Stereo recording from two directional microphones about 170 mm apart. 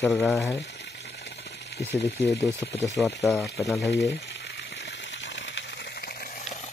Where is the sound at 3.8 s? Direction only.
90° left.